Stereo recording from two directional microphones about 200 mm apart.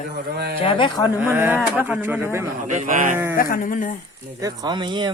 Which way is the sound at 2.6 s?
40° right (ahead or behind).